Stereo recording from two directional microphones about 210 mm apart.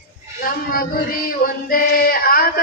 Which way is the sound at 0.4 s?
45° left (ahead or behind).